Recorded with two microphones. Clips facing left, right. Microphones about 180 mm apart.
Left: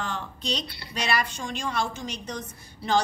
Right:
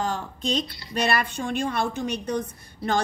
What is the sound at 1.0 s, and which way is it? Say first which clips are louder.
A woman's voice: right 3 dB; 55° right (ahead or behind).